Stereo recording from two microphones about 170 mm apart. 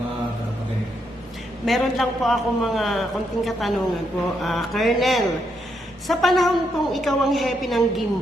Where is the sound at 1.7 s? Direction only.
Centre (ahead or behind).